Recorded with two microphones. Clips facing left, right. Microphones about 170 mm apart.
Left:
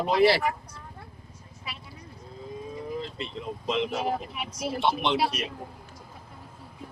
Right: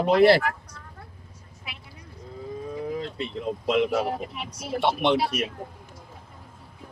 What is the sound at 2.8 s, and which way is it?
Speech, 65° right (ahead or behind).